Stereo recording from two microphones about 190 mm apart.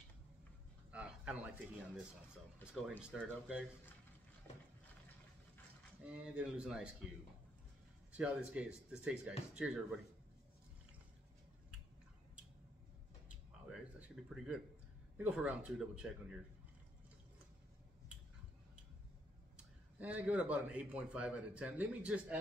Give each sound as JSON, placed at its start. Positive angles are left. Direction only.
{"t": 0.9, "sound": "a sound", "side_deg": -5}
{"t": 2.7, "sound": "speech", "side_deg": 0}
{"t": 6.0, "sound": "speech", "side_deg": -5}
{"t": 8.1, "sound": "speech", "side_deg": -5}
{"t": 13.3, "sound": "a sound", "side_deg": -5}
{"t": 15.1, "sound": "speech", "side_deg": -10}
{"t": 19.5, "sound": "a man's voice", "side_deg": -5}